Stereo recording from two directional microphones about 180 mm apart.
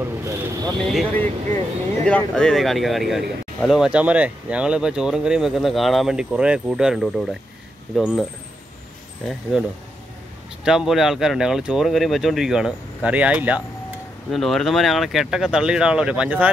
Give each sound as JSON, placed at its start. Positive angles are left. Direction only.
{"t": 0.0, "sound": "a sound", "side_deg": -15}
{"t": 0.7, "sound": "speech", "side_deg": 0}
{"t": 9.3, "sound": "speech", "side_deg": -5}